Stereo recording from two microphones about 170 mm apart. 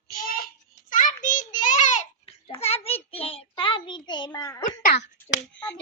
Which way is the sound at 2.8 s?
35° left (ahead or behind).